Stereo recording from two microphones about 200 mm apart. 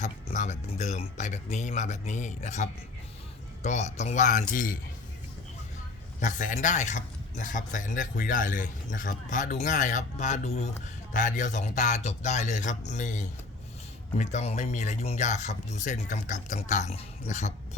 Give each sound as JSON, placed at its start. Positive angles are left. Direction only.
{"t": 0.0, "sound": "a man's voice", "side_deg": 35}
{"t": 6.1, "sound": "a man's voice", "side_deg": 40}